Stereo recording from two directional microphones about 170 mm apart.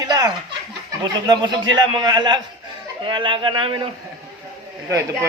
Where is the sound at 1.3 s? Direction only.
25° right (ahead or behind).